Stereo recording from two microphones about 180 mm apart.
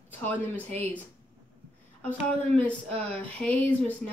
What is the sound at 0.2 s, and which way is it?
Speech, 10° left (ahead or behind).